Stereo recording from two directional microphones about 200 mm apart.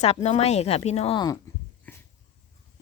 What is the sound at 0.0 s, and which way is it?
Speech, 35° left (ahead or behind).